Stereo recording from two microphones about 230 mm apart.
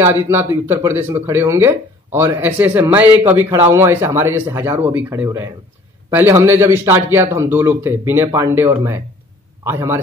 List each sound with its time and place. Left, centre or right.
0.0 s a man's voice: centre